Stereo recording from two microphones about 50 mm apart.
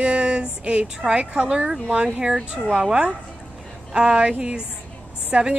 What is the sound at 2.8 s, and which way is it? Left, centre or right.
A woman's voice, centre.